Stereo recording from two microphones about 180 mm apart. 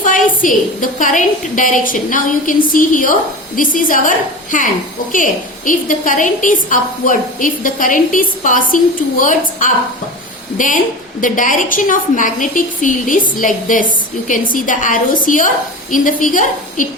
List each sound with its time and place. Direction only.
0.0 s a woman's voice: 50° left (ahead or behind)